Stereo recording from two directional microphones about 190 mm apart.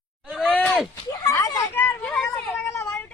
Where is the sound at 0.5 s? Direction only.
10° left (ahead or behind).